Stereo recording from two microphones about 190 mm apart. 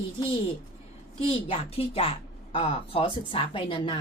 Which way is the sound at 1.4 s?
30° left (ahead or behind).